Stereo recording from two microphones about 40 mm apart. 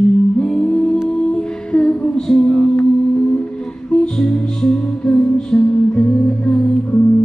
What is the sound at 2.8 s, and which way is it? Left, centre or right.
Music, left.